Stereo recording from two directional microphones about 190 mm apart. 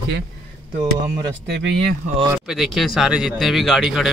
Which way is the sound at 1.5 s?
60° right (ahead or behind).